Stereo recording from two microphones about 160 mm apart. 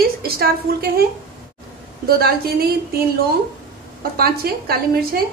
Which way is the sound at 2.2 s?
75° right (ahead or behind).